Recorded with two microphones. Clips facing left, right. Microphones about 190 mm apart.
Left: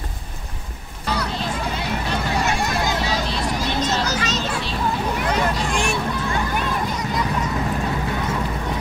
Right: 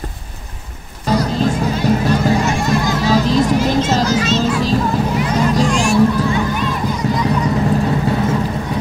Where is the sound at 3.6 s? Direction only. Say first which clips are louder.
Right 7 dB; 40° right (ahead or behind).